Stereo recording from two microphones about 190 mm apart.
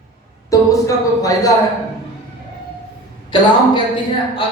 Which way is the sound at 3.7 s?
25° left (ahead or behind).